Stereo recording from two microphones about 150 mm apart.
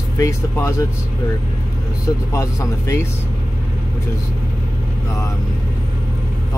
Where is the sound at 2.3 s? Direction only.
20° left (ahead or behind).